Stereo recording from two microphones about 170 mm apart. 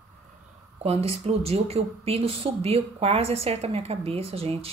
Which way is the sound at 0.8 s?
35° right (ahead or behind).